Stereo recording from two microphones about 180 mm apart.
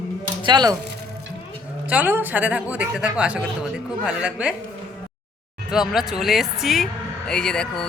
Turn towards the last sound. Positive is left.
turn(degrees=5)  # may be behind; listen again after turning